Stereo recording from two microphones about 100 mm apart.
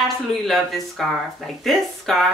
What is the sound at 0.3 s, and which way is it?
Speech, centre (ahead or behind).